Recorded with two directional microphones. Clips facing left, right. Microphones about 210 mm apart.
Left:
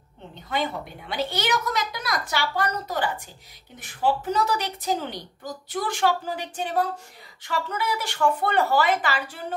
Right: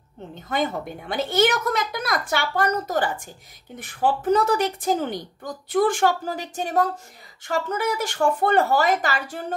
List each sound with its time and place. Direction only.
0.5 s a woman's voice: 50° right (ahead or behind)